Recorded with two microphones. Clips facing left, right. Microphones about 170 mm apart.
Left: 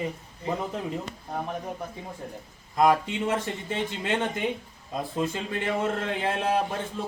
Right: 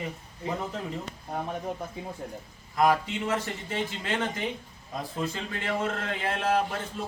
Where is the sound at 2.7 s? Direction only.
25° left (ahead or behind).